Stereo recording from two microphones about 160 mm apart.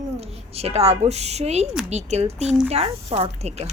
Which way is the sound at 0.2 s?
40° right (ahead or behind).